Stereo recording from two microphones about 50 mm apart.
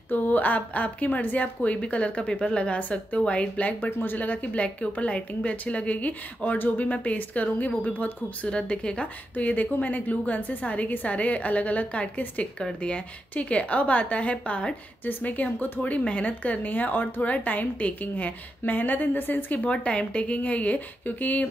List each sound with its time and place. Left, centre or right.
0.1 s a woman's voice: left
2.8 s a woman's voice: left
3.9 s speech: left
4.2 s a woman's voice: left
8.5 s a woman's voice: centre
15.0 s speech: left
19.6 s a woman's voice: left